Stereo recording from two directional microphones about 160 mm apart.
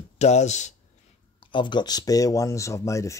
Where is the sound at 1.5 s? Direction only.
30° left (ahead or behind).